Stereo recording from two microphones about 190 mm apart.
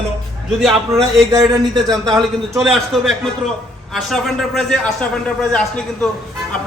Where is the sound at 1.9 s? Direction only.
20° right (ahead or behind).